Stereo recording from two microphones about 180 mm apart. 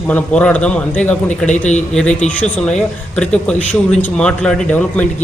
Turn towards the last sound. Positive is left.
turn(degrees=5)  # may be behind; listen again after turning